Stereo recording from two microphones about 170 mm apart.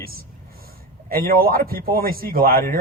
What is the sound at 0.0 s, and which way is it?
A man's voice, 60° right (ahead or behind).